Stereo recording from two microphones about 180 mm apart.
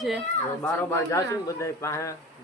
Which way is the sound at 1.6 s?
15° left (ahead or behind).